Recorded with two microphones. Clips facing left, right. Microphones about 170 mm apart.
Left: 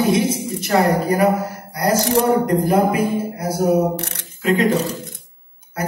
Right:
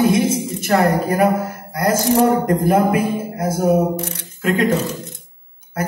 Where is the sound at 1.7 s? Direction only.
50° right (ahead or behind).